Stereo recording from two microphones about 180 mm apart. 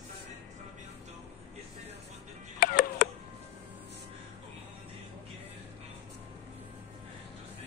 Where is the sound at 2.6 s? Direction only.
55° left (ahead or behind).